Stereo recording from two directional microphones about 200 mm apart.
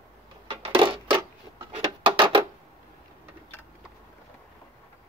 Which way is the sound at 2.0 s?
25° right (ahead or behind).